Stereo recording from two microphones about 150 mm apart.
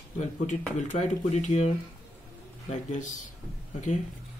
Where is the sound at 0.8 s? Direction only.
55° left (ahead or behind).